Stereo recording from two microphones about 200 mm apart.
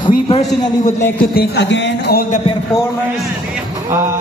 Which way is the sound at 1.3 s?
55° left (ahead or behind).